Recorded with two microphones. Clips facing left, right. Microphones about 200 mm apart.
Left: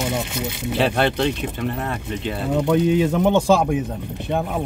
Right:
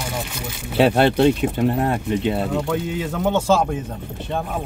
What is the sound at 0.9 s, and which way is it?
Speech, 35° right (ahead or behind).